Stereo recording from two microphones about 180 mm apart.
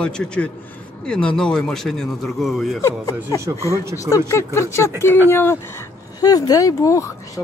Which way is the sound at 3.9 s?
15° left (ahead or behind).